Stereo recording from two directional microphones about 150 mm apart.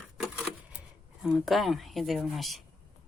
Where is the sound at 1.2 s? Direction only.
5° right (ahead or behind).